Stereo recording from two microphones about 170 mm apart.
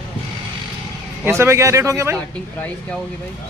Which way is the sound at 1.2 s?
15° right (ahead or behind).